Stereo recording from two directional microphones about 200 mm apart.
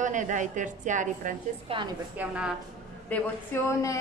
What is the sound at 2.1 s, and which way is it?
Speech, 5° right (ahead or behind).